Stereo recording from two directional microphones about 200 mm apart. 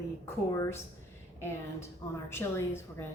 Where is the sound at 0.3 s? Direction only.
15° left (ahead or behind).